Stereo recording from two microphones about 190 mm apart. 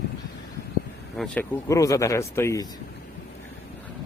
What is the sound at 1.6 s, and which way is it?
Speech, 15° left (ahead or behind).